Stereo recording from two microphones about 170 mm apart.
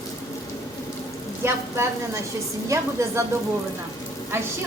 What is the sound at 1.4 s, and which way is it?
A woman's voice, 15° right (ahead or behind).